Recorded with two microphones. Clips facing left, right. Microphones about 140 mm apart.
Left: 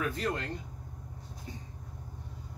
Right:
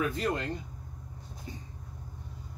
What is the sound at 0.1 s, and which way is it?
Speech, 20° right (ahead or behind).